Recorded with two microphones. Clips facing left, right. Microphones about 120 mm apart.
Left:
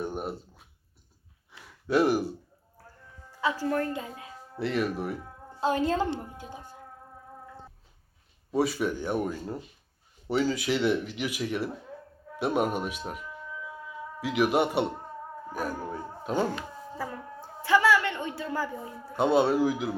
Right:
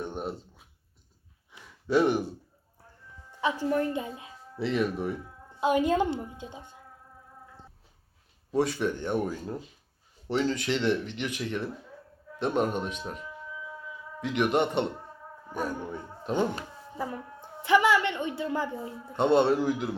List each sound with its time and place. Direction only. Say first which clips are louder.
0.0 s a sound: left 1 dB; 5° left (ahead or behind)
1.9 s speech: even; 5° left (ahead or behind)
3.4 s a woman's voice: right 1 dB; 20° right (ahead or behind)
4.6 s speech: right 1 dB; centre (ahead or behind)
5.5 s a woman's voice: right 2 dB; 15° right (ahead or behind)
8.5 s speech: even; 5° left (ahead or behind)
17.6 s a woman's voice: even; 20° right (ahead or behind)
19.1 s speech: right 1 dB; 5° left (ahead or behind)